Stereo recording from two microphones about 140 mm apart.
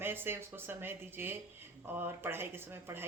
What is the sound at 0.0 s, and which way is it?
Speech, 15° right (ahead or behind).